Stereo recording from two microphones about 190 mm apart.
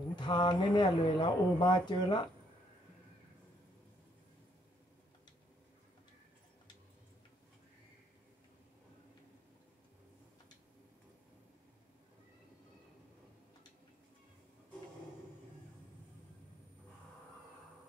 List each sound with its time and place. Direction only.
0.1 s speech: 25° left (ahead or behind)